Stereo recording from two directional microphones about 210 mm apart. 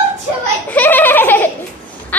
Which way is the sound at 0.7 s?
10° left (ahead or behind).